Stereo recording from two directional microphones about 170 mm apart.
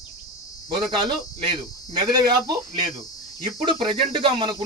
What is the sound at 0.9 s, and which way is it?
Speech, 25° right (ahead or behind).